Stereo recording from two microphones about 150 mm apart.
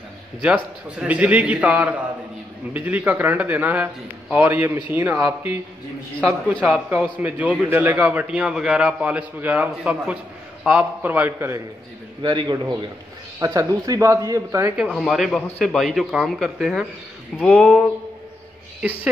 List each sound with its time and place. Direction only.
0.4 s a man's voice: 10° right (ahead or behind)
6.9 s a man's voice: 10° right (ahead or behind)
12.2 s a man's voice: 30° right (ahead or behind)
14.8 s speech: centre (ahead or behind)